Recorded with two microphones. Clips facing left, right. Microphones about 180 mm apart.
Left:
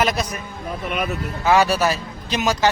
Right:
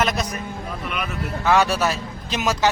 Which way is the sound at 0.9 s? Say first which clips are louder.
Left 5 dB; 40° left (ahead or behind).